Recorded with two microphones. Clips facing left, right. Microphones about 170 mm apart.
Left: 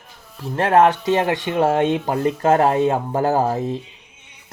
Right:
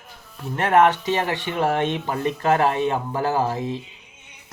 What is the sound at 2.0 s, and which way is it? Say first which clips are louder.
Speech: left 4 dB; 40° left (ahead or behind).